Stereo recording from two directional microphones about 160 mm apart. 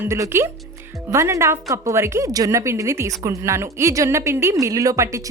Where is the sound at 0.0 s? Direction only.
15° right (ahead or behind).